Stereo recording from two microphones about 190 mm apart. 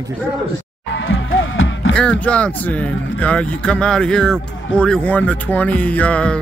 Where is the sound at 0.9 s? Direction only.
85° left.